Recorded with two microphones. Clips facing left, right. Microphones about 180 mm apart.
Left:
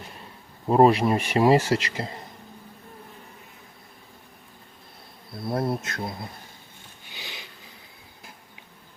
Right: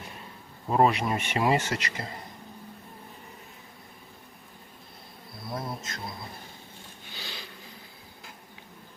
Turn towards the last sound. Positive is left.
turn(degrees=15)  # may be behind; listen again after turning